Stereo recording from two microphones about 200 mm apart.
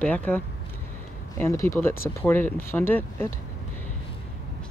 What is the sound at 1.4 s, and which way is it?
Speech, 15° left (ahead or behind).